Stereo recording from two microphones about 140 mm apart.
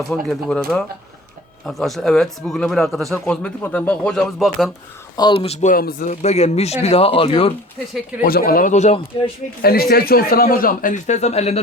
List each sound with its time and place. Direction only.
0.1 s speech: 5° left (ahead or behind)
5.1 s speech: 35° left (ahead or behind)
5.5 s speech: 75° left (ahead or behind); by 7.5 s 40° left (ahead or behind)
8.2 s speech: 90° left; by 9.3 s 50° left (ahead or behind)
9.6 s a man's voice: 90° left; by 11.6 s 50° left (ahead or behind)